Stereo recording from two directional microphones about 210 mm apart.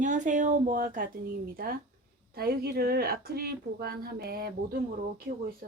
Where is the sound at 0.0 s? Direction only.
35° right (ahead or behind).